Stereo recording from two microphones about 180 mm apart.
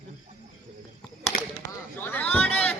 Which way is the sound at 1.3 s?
55° left (ahead or behind).